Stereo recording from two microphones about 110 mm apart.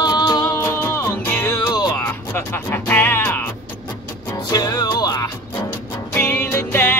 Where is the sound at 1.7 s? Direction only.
35° left (ahead or behind).